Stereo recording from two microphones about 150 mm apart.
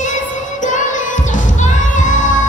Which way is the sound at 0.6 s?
60° left (ahead or behind).